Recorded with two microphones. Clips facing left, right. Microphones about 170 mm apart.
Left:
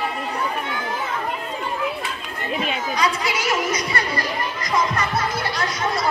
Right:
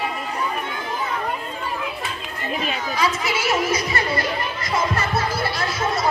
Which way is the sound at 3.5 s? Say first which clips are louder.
Right 2 dB; 25° right (ahead or behind).